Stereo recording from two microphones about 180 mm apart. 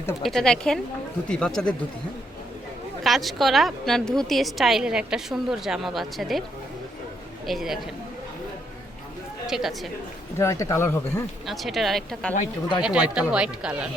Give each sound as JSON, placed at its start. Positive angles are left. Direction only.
{"t": 0.2, "sound": "a woman's voice", "side_deg": 0}
{"t": 3.0, "sound": "a woman's voice", "side_deg": 0}
{"t": 7.4, "sound": "a woman's voice", "side_deg": 0}
{"t": 9.5, "sound": "a woman's voice", "side_deg": 0}
{"t": 10.3, "sound": "speech", "side_deg": 15}
{"t": 11.4, "sound": "a woman's voice", "side_deg": 0}